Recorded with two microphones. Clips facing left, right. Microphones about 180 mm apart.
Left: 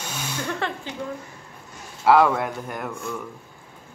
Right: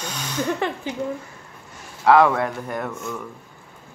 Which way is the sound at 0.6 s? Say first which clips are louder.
Right 4 dB; 15° right (ahead or behind).